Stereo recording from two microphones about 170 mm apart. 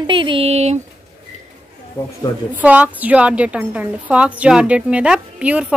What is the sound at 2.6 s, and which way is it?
A woman's voice, 10° right (ahead or behind).